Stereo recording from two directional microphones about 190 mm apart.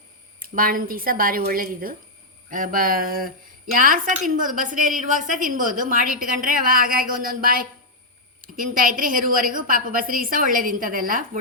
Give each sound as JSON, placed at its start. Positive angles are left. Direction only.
{"t": 0.3, "sound": "a woman's voice", "side_deg": -50}